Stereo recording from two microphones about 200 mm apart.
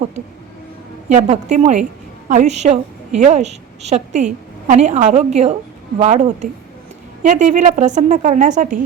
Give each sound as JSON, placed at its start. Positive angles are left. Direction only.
{"t": 1.1, "sound": "a woman's voice", "side_deg": -35}